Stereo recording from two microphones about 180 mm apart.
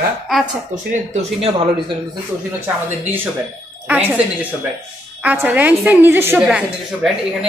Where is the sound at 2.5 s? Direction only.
10° right (ahead or behind).